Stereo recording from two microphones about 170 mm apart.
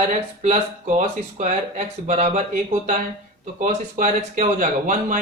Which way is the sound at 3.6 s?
50° right (ahead or behind).